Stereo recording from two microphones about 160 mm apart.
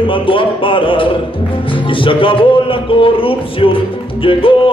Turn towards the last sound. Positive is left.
turn(degrees=35)  # may be behind; listen again after turning